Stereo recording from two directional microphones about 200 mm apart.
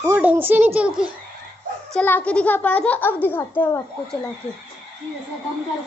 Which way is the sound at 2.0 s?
10° left (ahead or behind).